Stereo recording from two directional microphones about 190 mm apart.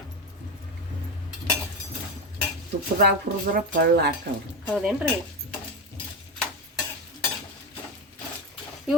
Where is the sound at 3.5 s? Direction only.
60° right (ahead or behind).